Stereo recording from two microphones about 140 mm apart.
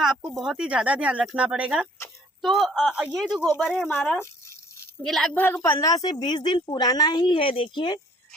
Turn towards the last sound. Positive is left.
turn(degrees=40)  # may be behind; listen again after turning